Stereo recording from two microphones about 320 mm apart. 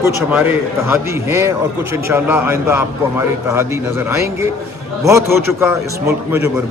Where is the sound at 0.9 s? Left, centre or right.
Centre.